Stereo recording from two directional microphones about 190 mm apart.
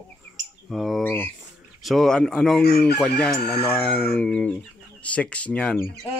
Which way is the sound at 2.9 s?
5° left (ahead or behind).